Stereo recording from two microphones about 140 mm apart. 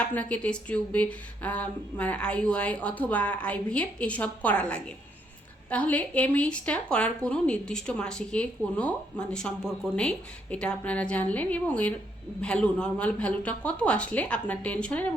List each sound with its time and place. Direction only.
0.1 s a woman's voice: 10° left (ahead or behind)